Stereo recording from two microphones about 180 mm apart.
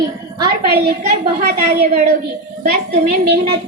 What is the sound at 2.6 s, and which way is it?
Speech, 45° right (ahead or behind).